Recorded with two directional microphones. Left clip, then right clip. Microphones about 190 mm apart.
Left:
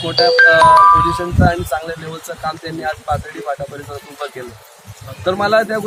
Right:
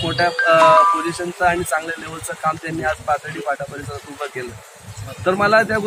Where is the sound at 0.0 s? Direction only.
5° left (ahead or behind).